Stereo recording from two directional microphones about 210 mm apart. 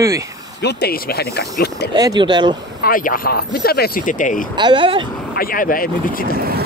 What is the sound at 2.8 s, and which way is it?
Speech, 40° left (ahead or behind).